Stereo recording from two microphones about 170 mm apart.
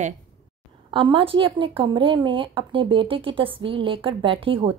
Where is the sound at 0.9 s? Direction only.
30° right (ahead or behind).